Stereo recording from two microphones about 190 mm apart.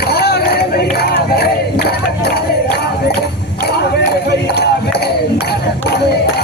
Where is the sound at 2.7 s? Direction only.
60° left (ahead or behind).